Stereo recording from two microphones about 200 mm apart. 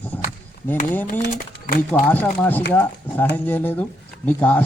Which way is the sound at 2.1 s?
10° left (ahead or behind).